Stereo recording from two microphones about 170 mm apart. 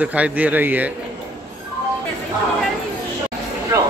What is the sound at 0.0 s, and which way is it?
Speech, 10° right (ahead or behind).